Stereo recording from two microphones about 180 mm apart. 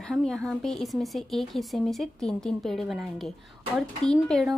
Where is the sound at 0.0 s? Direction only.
5° left (ahead or behind).